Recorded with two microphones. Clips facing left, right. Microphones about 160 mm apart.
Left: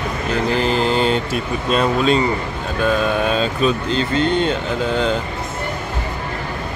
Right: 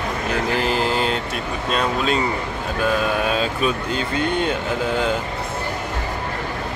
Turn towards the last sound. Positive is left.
turn(degrees=-10)  # may be behind; listen again after turning